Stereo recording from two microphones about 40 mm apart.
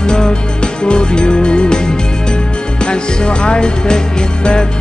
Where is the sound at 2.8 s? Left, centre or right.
Left.